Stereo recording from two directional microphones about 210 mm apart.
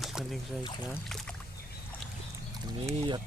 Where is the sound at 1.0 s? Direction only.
Centre (ahead or behind).